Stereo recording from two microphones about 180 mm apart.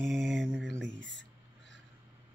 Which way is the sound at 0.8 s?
90° right.